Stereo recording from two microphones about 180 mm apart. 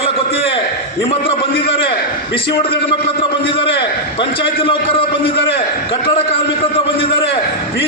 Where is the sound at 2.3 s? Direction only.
30° left (ahead or behind).